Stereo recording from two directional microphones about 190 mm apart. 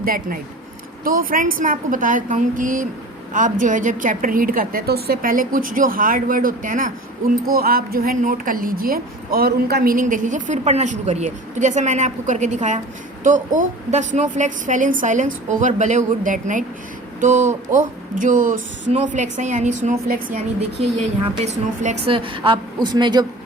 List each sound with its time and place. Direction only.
0.0 s a woman's voice: 50° right (ahead or behind)
20.7 s a woman's voice: 35° right (ahead or behind)